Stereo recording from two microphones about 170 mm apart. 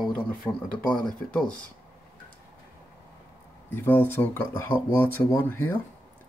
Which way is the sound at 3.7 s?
10° left (ahead or behind).